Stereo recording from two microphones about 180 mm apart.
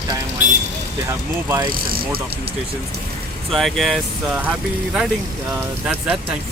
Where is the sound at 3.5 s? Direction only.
Centre (ahead or behind).